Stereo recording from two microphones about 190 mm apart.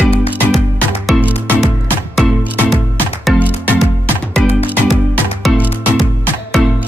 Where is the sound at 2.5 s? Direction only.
10° left (ahead or behind).